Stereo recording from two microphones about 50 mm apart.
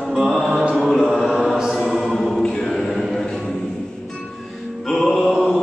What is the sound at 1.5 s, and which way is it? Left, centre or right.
Mantra, centre.